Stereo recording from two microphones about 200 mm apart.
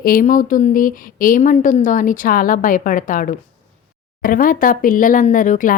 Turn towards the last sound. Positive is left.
turn(degrees=40)  # may be behind; listen again after turning